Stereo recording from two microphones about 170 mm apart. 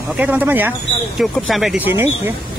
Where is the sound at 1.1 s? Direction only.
Centre (ahead or behind); by 2.4 s 15° right (ahead or behind).